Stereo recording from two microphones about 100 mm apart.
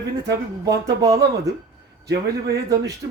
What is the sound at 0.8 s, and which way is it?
Speech, 35° right (ahead or behind).